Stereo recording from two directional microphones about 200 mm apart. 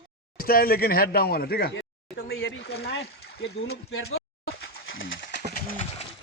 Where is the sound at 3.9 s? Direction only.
90° left.